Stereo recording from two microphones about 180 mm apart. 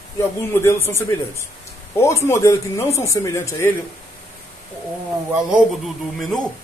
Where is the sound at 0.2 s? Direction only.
15° left (ahead or behind).